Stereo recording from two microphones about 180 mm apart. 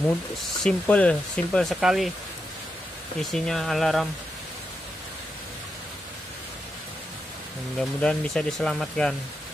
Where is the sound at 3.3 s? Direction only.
Centre (ahead or behind).